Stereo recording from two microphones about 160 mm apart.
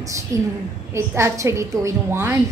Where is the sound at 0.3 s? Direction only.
20° right (ahead or behind).